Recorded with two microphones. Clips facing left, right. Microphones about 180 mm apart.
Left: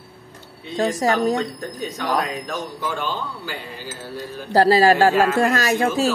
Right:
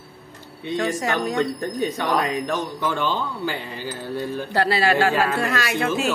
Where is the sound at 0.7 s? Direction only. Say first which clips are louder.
Left 4 dB; 35° left (ahead or behind).